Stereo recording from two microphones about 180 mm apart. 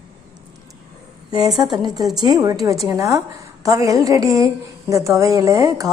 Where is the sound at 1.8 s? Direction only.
20° right (ahead or behind).